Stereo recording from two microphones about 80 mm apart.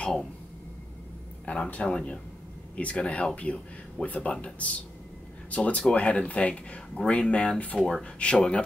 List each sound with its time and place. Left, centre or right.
1.4 s speech: centre